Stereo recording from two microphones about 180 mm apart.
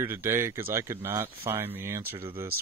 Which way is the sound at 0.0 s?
15° right (ahead or behind).